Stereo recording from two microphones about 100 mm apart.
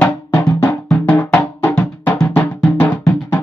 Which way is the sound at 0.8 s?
15° left (ahead or behind).